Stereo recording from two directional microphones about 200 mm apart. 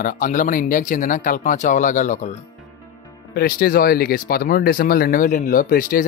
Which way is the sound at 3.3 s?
50° left (ahead or behind).